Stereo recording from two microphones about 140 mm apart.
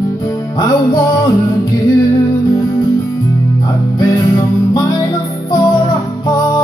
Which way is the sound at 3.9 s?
30° left (ahead or behind).